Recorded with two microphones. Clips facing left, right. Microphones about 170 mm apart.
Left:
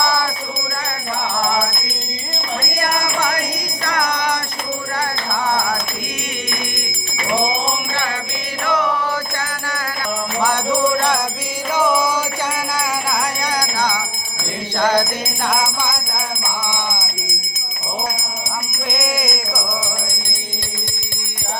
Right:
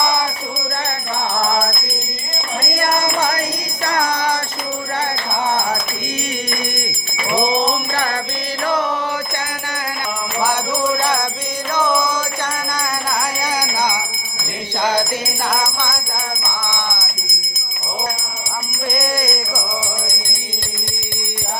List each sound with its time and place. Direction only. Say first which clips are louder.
2.7 s music: right 3 dB; 25° right (ahead or behind)
8.6 s mantra: even; 30° right (ahead or behind)
11.0 s music: even; centre (ahead or behind)
15.4 s music: left 2 dB; 5° left (ahead or behind)
18.9 s music: right 2 dB; centre (ahead or behind)